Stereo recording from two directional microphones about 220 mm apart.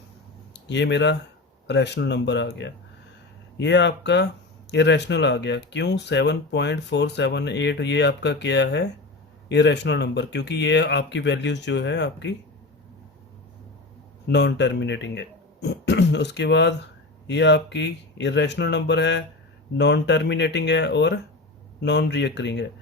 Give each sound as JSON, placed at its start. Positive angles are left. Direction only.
{"t": 0.7, "sound": "speech", "side_deg": 50}
{"t": 14.3, "sound": "speech", "side_deg": 50}